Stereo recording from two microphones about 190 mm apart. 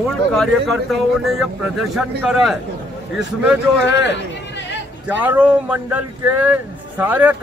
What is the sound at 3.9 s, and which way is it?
Speech, 70° left (ahead or behind).